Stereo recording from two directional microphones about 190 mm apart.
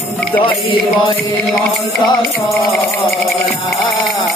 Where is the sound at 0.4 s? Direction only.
25° left (ahead or behind).